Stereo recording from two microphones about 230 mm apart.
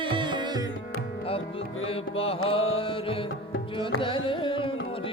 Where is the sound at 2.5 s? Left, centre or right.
Left.